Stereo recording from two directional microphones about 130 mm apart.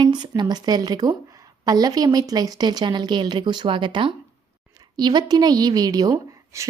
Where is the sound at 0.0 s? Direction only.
35° right (ahead or behind).